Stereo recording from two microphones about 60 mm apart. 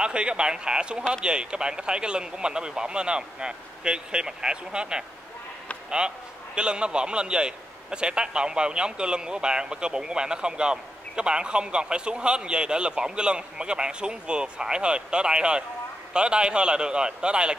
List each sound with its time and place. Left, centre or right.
0.0 s a man's voice: centre